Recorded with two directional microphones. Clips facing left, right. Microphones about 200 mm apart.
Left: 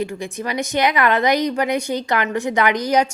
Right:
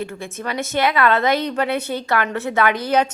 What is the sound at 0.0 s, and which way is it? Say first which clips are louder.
A woman's voice: left 3 dB; 15° left (ahead or behind).